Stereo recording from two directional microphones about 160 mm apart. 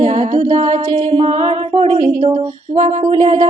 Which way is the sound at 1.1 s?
40° right (ahead or behind).